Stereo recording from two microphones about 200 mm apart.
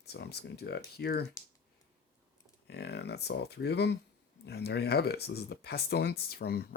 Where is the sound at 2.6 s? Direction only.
55° left (ahead or behind).